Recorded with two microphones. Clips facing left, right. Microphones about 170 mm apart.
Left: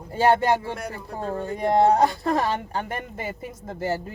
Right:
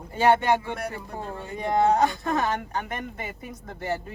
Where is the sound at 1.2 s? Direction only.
35° left (ahead or behind).